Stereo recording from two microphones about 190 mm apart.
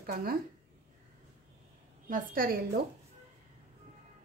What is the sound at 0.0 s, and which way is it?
Speech, 50° right (ahead or behind).